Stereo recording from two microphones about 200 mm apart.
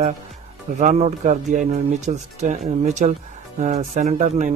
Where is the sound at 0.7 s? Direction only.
35° right (ahead or behind).